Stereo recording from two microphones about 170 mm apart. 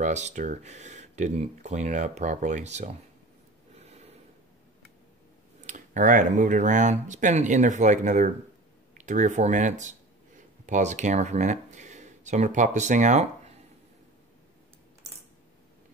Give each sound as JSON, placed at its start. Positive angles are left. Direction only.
{"t": 0.0, "sound": "speech", "side_deg": -45}
{"t": 5.7, "sound": "speech", "side_deg": -50}